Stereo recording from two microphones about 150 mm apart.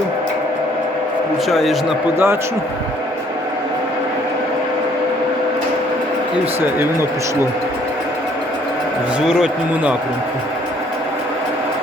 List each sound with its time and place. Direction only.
1.5 s speech: centre (ahead or behind)
2.1 s speech: 15° right (ahead or behind)
9.2 s speech: 5° right (ahead or behind)